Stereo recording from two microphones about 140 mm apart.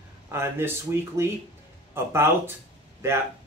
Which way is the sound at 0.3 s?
20° right (ahead or behind).